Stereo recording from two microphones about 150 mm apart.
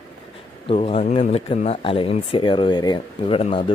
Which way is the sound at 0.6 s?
40° left (ahead or behind).